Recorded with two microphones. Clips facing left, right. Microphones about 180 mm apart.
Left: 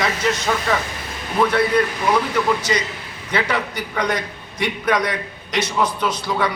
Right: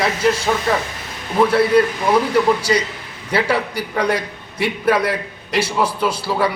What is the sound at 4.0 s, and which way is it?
A man's voice, 10° right (ahead or behind).